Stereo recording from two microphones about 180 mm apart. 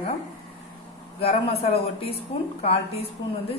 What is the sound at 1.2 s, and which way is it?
A woman's voice, 35° left (ahead or behind).